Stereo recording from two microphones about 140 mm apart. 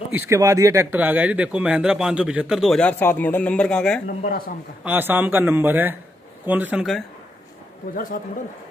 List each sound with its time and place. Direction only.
0.1 s speech: 20° right (ahead or behind)
0.9 s a man's voice: 10° right (ahead or behind)
2.8 s speech: 10° left (ahead or behind)
4.2 s a man's voice: 85° left
4.8 s a man's voice: 15° right (ahead or behind)
6.8 s speech: centre (ahead or behind)
7.9 s a man's voice: 80° left